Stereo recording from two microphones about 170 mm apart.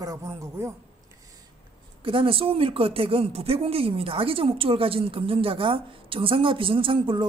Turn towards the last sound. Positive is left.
turn(degrees=-30)  # may be behind; listen again after turning